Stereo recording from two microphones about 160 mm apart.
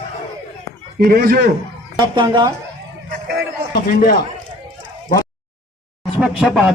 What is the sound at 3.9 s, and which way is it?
Speech, 60° left (ahead or behind).